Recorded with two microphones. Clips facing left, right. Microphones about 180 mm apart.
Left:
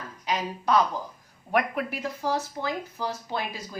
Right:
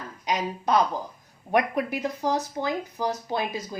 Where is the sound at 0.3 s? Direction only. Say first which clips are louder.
Right 1 dB; 20° right (ahead or behind).